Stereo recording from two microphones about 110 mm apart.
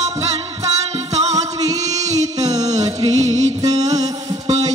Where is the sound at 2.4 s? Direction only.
35° right (ahead or behind).